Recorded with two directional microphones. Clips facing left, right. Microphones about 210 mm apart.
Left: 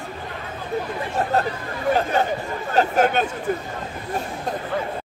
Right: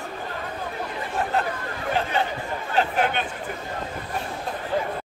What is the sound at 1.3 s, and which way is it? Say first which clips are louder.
Chatter: left 3 dB; 40° left (ahead or behind).